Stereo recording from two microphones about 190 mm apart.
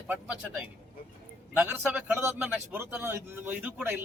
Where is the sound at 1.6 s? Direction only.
10° right (ahead or behind).